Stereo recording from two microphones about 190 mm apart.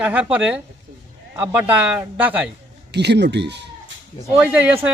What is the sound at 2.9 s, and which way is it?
Speech, 60° right (ahead or behind).